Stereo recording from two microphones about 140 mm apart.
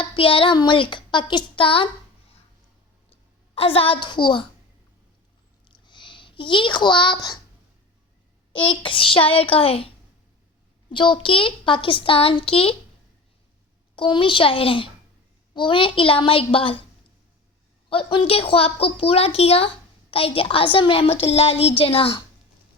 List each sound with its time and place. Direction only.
0.0 s a woman's voice: 40° left (ahead or behind)
3.5 s a woman's voice: 45° left (ahead or behind)
5.6 s a sound: 35° left (ahead or behind)
8.5 s a woman's voice: 35° left (ahead or behind)
13.9 s a woman's voice: 35° left (ahead or behind)
17.8 s a woman's voice: 40° left (ahead or behind)